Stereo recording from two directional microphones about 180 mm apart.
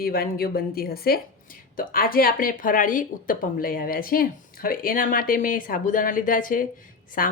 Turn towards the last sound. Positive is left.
turn(degrees=50)  # may be behind; listen again after turning